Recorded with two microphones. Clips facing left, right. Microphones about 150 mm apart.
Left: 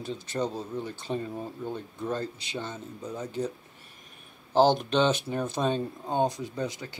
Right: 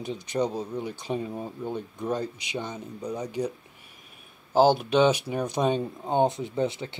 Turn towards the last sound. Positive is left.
turn(degrees=-25)  # may be behind; listen again after turning